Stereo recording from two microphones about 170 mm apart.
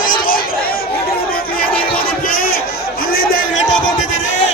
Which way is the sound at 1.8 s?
60° left (ahead or behind).